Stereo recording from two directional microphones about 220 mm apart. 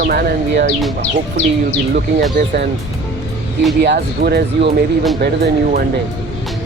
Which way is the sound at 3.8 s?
45° right (ahead or behind).